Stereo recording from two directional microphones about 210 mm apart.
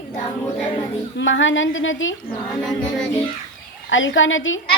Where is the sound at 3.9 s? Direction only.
65° left (ahead or behind).